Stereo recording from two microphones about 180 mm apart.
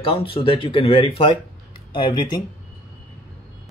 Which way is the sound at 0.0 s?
30° left (ahead or behind).